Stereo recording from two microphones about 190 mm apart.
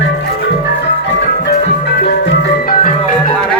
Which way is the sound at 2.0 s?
55° left (ahead or behind).